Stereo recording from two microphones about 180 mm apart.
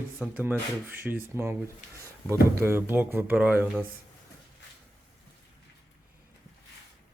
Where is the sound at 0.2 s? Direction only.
10° right (ahead or behind).